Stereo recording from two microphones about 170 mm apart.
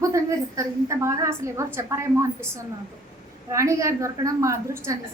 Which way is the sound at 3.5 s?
20° right (ahead or behind).